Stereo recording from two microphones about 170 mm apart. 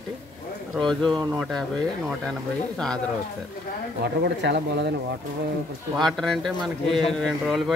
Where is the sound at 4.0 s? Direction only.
80° right.